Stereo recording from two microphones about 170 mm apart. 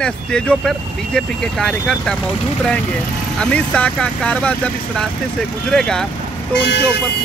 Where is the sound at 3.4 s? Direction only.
5° left (ahead or behind).